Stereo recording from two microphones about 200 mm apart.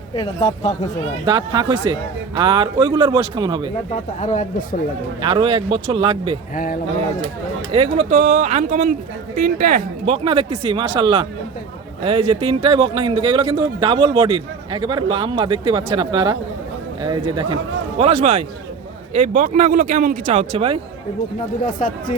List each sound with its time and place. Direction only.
0.1 s speech: 25° left (ahead or behind)
1.2 s speech: 20° right (ahead or behind)
4.2 s speech: 35° left (ahead or behind)
5.2 s speech: 25° right (ahead or behind)
7.7 s speech: 30° right (ahead or behind)
10.1 s speech: 30° right (ahead or behind)
21.8 s speech: 45° left (ahead or behind)